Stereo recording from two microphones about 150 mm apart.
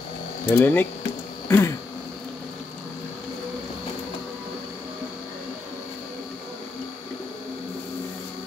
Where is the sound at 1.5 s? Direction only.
20° left (ahead or behind).